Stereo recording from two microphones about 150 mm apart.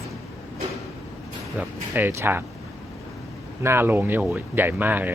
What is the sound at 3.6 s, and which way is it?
Speech, 15° right (ahead or behind).